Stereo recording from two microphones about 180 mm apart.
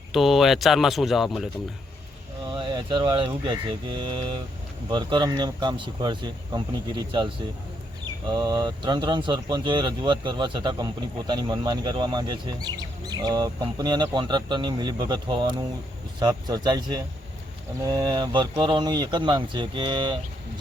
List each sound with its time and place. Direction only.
0.1 s speech: centre (ahead or behind)
2.5 s speech: 25° right (ahead or behind)